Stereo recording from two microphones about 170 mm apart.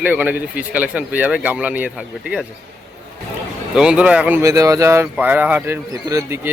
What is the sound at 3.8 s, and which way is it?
Speech, 5° right (ahead or behind).